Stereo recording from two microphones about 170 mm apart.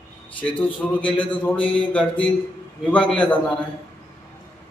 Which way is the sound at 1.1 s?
30° left (ahead or behind).